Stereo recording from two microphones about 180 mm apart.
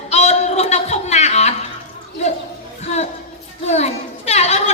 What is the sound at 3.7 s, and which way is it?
Children playing, 40° left (ahead or behind).